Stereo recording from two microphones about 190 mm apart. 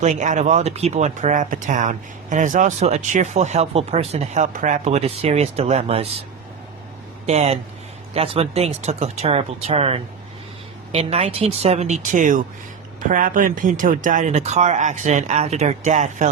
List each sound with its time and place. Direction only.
0.0 s speech: 40° right (ahead or behind)
7.3 s speech: 35° right (ahead or behind)